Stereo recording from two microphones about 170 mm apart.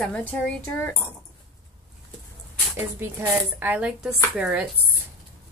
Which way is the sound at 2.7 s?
10° right (ahead or behind).